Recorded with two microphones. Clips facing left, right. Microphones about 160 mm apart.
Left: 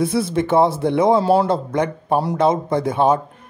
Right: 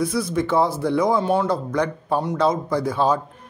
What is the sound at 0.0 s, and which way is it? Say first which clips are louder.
A man's voice: left 3 dB; 25° left (ahead or behind).